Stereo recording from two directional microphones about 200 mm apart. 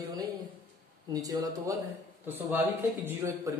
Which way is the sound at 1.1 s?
15° right (ahead or behind).